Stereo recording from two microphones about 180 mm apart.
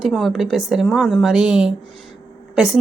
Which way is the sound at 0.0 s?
Centre (ahead or behind).